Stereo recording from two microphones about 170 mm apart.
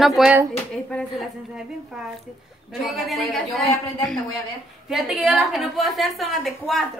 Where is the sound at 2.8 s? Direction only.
Centre (ahead or behind).